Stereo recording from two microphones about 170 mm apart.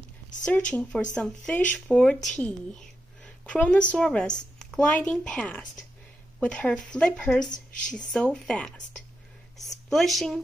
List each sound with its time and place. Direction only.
0.5 s a woman's voice: 10° left (ahead or behind)
9.8 s speech: centre (ahead or behind)